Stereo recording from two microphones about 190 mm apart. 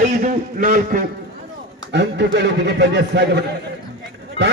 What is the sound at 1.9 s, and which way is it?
Speech, 65° right (ahead or behind).